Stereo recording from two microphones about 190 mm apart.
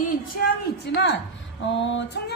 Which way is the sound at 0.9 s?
65° left (ahead or behind).